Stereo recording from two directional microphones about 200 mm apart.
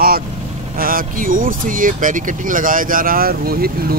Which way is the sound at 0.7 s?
45° right (ahead or behind).